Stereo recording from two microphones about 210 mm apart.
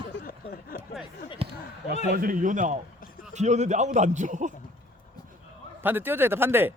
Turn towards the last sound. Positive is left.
turn(degrees=-10)  # may be behind; listen again after turning